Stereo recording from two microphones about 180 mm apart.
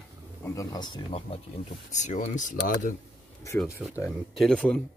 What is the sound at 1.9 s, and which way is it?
Speech, 40° left (ahead or behind).